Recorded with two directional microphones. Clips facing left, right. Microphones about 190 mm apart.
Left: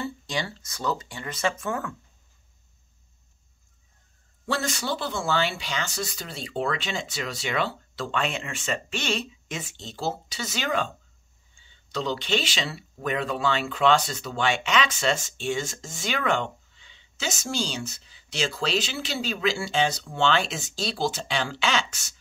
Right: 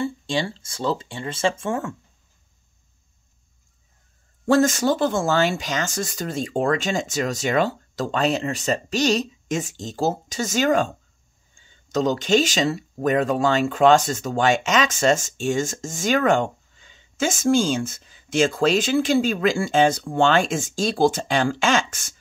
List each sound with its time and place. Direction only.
0.0 s speech: 25° right (ahead or behind)
4.5 s speech: 45° right (ahead or behind)